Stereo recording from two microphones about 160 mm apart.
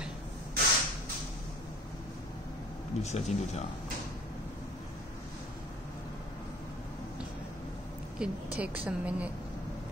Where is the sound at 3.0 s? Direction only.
45° left (ahead or behind).